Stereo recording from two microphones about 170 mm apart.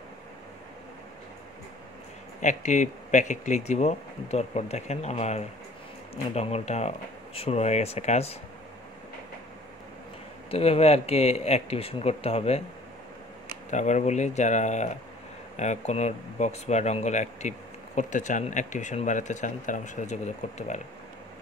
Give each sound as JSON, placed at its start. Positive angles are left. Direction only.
{"t": 2.4, "sound": "speech", "side_deg": 45}
{"t": 10.5, "sound": "speech", "side_deg": 35}
{"t": 13.7, "sound": "speech", "side_deg": 45}